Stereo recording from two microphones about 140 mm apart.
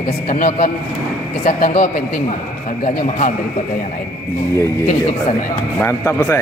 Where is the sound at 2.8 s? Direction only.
60° left (ahead or behind).